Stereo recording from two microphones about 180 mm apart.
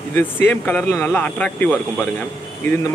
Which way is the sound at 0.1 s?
10° left (ahead or behind).